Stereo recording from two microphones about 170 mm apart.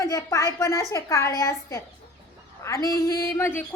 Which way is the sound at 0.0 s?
20° left (ahead or behind).